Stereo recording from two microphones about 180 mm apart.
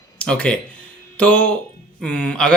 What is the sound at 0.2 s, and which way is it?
Speech, 5° left (ahead or behind).